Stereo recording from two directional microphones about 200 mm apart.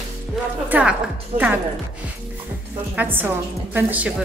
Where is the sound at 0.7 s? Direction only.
5° right (ahead or behind).